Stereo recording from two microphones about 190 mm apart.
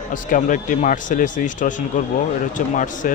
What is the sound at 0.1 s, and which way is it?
Speech, 45° left (ahead or behind).